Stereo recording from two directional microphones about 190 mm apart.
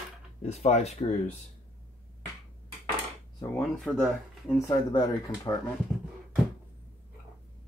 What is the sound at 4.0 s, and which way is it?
Speech, centre (ahead or behind).